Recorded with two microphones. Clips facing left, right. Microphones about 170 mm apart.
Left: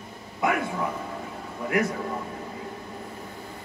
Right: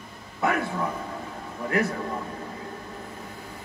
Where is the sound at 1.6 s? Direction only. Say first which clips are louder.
Even; 15° left (ahead or behind).